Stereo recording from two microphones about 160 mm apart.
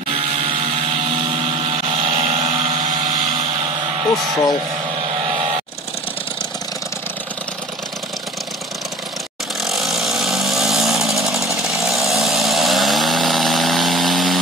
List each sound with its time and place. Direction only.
1.1 s vehicle: 35° right (ahead or behind)
5.2 s a sound: 40° right (ahead or behind)
9.6 s chainsaw: centre (ahead or behind)